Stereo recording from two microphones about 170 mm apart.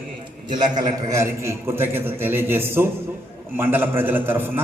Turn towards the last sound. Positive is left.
turn(degrees=-10)  # may be behind; listen again after turning